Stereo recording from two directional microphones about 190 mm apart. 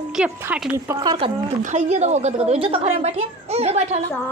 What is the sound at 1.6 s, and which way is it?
A woman's voice, 35° right (ahead or behind).